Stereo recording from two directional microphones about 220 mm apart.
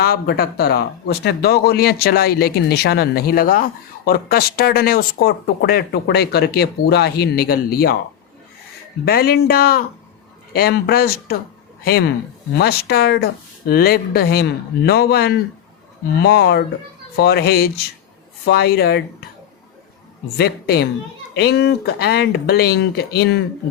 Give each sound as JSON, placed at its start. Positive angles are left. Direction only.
{"t": 0.0, "sound": "a man's voice", "side_deg": 45}
{"t": 9.0, "sound": "a man's voice", "side_deg": 45}
{"t": 12.5, "sound": "a man's voice", "side_deg": 45}
{"t": 20.3, "sound": "a man's voice", "side_deg": 45}